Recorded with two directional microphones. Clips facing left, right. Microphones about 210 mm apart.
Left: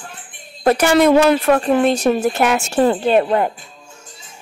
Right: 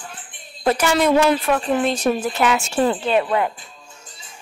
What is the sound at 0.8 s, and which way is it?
Speech, 60° left (ahead or behind).